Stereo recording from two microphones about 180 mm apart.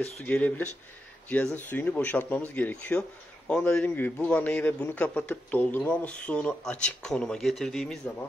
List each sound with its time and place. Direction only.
0.0 s speech: 5° left (ahead or behind)